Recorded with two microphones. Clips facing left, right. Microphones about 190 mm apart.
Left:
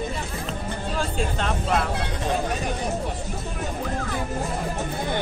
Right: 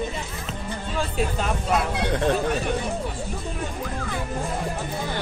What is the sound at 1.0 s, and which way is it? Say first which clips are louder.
Speech: right 2 dB; 5° right (ahead or behind).